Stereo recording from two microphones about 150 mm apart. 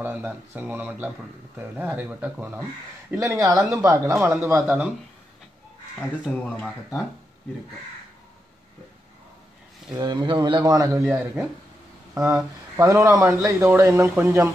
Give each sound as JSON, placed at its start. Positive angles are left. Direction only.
{"t": 0.0, "sound": "speech", "side_deg": -10}
{"t": 3.1, "sound": "speech", "side_deg": -20}
{"t": 5.9, "sound": "speech", "side_deg": 5}
{"t": 9.9, "sound": "speech", "side_deg": -30}